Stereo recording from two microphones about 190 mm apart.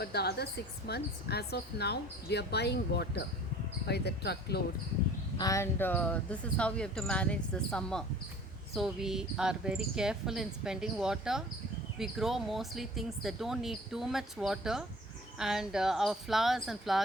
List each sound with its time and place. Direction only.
0.0 s speech: 60° left (ahead or behind)
5.4 s a sound: 15° left (ahead or behind)
6.6 s speech: 5° left (ahead or behind)